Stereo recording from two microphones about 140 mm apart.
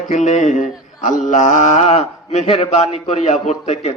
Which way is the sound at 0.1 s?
60° left (ahead or behind).